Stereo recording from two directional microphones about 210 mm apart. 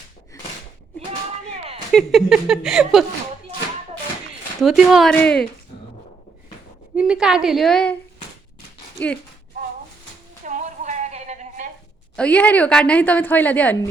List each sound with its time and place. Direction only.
1.9 s speech: centre (ahead or behind)
4.6 s speech: centre (ahead or behind)
6.9 s speech: 5° right (ahead or behind)
9.0 s a woman's voice: 5° left (ahead or behind)
10.4 s a sound: 35° right (ahead or behind)
12.1 s a woman's voice: 5° left (ahead or behind)